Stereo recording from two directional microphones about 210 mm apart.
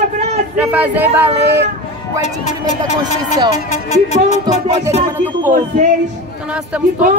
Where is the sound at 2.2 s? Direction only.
35° left (ahead or behind).